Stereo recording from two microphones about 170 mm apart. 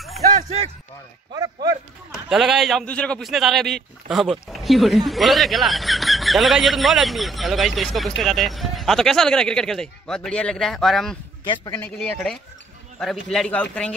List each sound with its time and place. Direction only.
0.3 s speech: 40° right (ahead or behind)
1.3 s speech: 20° right (ahead or behind)
2.1 s a man's voice: centre (ahead or behind)